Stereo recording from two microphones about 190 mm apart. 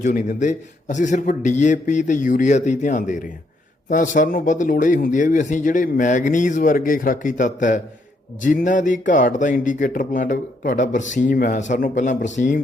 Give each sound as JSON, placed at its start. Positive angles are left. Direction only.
{"t": 0.0, "sound": "a man's voice", "side_deg": 40}